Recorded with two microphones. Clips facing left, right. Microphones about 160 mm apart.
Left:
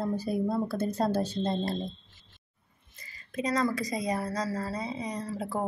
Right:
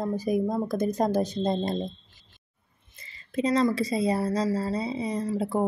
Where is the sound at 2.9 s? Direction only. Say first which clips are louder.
Right 5 dB; 25° right (ahead or behind).